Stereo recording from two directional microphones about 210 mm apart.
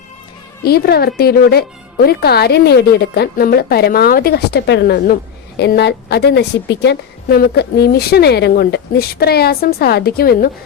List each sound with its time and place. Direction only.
0.6 s a woman's voice: 45° left (ahead or behind)